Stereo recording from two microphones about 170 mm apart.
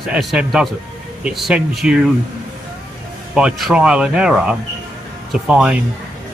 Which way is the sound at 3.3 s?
5° right (ahead or behind).